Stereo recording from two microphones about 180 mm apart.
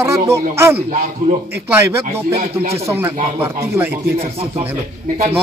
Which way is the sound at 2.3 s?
35° right (ahead or behind).